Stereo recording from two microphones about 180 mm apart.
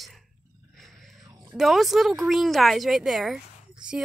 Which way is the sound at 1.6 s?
Centre (ahead or behind).